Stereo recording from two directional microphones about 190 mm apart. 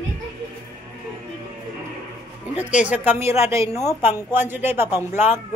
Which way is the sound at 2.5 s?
5° right (ahead or behind).